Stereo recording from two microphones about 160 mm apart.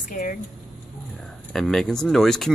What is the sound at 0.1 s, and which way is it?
Speech, 55° left (ahead or behind).